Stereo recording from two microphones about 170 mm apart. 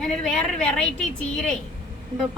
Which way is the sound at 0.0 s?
5° left (ahead or behind).